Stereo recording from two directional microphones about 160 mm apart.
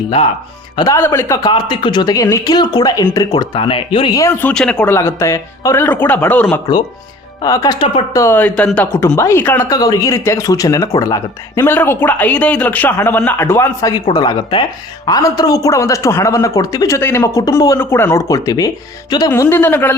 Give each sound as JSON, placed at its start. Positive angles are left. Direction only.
{"t": 0.8, "sound": "a man's voice", "side_deg": 20}
{"t": 4.1, "sound": "speech", "side_deg": 15}
{"t": 4.9, "sound": "speech", "side_deg": 20}
{"t": 7.4, "sound": "a man's voice", "side_deg": 25}